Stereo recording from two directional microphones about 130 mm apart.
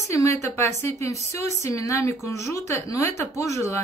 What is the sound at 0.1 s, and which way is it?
A woman's voice, 25° left (ahead or behind).